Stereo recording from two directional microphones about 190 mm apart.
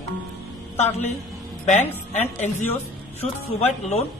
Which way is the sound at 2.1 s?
40° left (ahead or behind).